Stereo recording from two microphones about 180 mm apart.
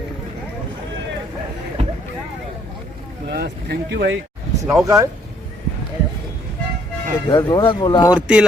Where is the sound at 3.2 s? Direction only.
65° right (ahead or behind).